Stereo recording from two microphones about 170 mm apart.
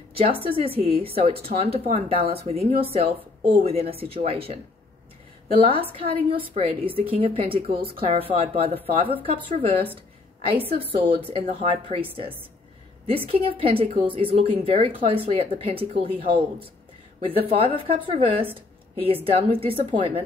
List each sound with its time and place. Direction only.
0.1 s a woman's voice: 35° right (ahead or behind)
5.7 s a woman's voice: 35° right (ahead or behind)
7.7 s speech: 65° right (ahead or behind)
8.0 s a woman's voice: 35° right (ahead or behind)
11.1 s a woman's voice: 35° right (ahead or behind)
13.1 s a woman's voice: 35° right (ahead or behind)